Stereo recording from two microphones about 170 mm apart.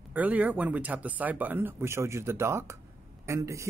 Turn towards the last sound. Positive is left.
turn(degrees=-15)  # may be behind; listen again after turning